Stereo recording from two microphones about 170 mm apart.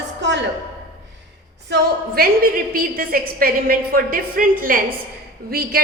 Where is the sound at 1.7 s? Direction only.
65° right (ahead or behind).